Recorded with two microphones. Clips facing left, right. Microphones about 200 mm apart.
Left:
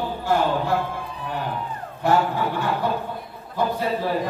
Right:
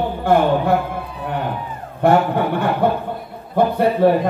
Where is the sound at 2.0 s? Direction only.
60° right (ahead or behind).